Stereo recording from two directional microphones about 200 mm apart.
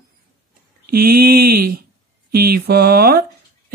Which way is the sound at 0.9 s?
50° right (ahead or behind).